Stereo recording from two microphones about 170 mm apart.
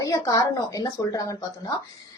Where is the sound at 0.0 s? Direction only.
20° left (ahead or behind).